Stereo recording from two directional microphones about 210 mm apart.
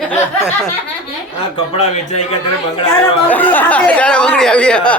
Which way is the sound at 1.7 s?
30° left (ahead or behind).